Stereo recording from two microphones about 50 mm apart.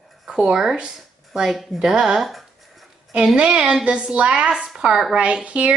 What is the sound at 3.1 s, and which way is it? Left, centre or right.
A woman's voice, right.